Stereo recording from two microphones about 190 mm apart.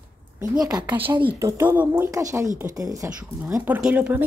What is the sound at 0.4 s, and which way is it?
Speech, 20° right (ahead or behind).